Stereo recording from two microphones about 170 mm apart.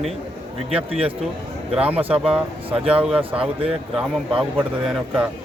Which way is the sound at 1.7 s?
10° right (ahead or behind).